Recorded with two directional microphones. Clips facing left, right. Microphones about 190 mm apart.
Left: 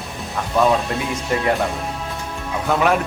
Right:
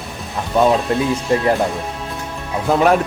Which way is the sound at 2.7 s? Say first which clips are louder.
Right 4 dB; 35° right (ahead or behind).